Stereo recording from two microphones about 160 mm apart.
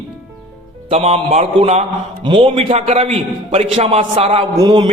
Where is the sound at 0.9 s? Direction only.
40° right (ahead or behind).